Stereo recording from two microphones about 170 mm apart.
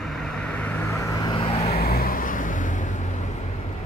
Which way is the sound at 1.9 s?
60° left (ahead or behind).